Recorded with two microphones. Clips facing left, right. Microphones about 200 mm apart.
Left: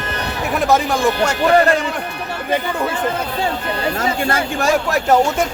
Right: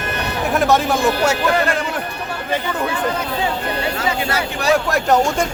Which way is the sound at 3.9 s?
50° left (ahead or behind).